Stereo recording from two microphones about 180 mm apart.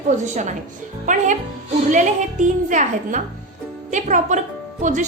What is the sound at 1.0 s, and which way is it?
A woman's voice, 45° right (ahead or behind).